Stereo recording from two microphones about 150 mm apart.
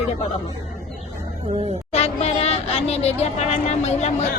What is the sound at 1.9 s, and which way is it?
Speech, 45° left (ahead or behind).